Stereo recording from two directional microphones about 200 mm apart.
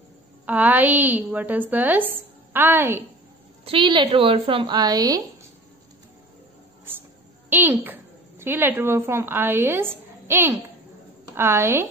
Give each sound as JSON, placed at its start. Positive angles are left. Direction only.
{"t": 0.5, "sound": "a woman's voice", "side_deg": -10}
{"t": 3.6, "sound": "a woman's voice", "side_deg": -25}
{"t": 7.4, "sound": "a woman's voice", "side_deg": -10}